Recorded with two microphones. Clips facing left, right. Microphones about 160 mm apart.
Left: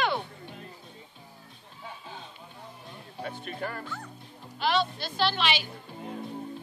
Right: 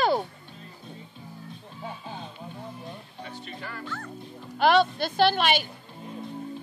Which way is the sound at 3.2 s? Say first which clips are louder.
Left 5 dB; 50° left (ahead or behind).